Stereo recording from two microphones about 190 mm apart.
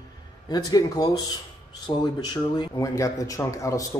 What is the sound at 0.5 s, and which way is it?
A man's voice, 20° left (ahead or behind).